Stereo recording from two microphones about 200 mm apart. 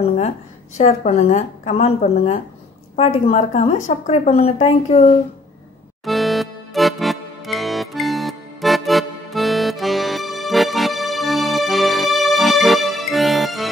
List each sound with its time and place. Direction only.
0.7 s a woman's voice: 35° left (ahead or behind)
6.0 s music: centre (ahead or behind)